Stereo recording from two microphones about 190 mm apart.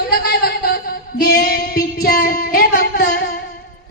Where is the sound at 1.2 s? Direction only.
55° left (ahead or behind).